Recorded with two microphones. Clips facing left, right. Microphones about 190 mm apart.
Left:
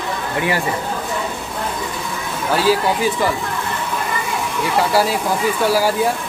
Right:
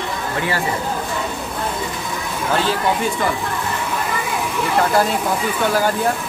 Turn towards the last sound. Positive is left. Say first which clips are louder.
# left 2 dB
turn(degrees=5)  # may be behind; listen again after turning